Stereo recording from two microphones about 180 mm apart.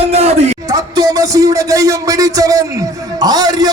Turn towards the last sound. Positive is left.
turn(degrees=-20)  # may be behind; listen again after turning